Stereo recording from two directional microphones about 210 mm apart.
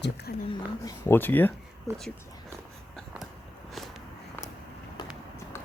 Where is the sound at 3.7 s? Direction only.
Centre (ahead or behind).